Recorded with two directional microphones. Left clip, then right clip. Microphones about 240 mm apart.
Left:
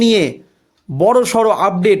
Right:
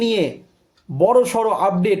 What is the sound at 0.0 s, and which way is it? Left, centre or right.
A man's voice, left.